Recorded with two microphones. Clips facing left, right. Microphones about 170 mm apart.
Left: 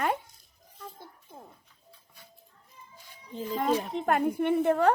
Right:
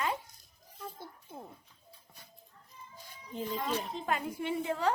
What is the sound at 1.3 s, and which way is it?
Speech, 5° right (ahead or behind).